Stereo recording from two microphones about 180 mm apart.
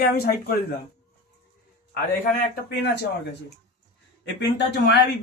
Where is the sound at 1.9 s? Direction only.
55° left (ahead or behind).